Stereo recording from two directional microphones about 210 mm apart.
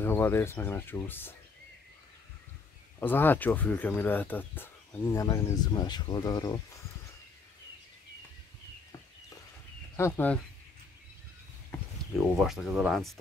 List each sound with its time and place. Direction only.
0.0 s speech: 10° left (ahead or behind)
3.0 s speech: 10° left (ahead or behind)
9.9 s speech: 10° left (ahead or behind)
12.2 s speech: centre (ahead or behind)